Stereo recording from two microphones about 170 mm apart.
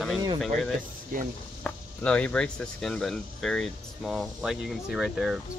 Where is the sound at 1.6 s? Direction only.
5° left (ahead or behind).